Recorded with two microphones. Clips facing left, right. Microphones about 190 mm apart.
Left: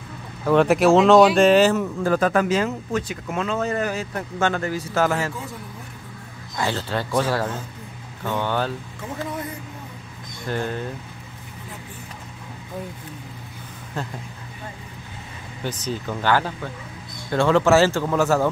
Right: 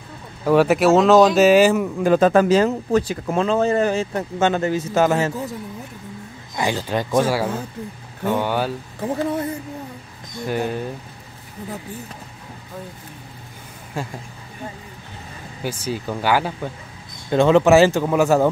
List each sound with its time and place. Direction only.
0.5 s speech: 5° right (ahead or behind); by 5.3 s 20° right (ahead or behind)
6.5 s speech: 15° right (ahead or behind)
9.0 s speech: 35° right (ahead or behind)
10.5 s speech: 10° right (ahead or behind)
14.0 s speech: 10° right (ahead or behind)
15.6 s speech: 10° right (ahead or behind)